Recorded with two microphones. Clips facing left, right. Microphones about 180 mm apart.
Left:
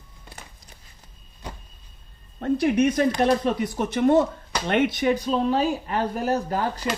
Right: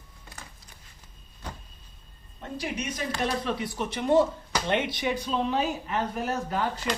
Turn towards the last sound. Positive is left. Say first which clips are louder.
# left 4 dB
turn(degrees=40)  # may be behind; listen again after turning